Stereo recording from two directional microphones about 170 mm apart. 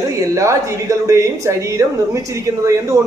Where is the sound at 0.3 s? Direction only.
15° right (ahead or behind).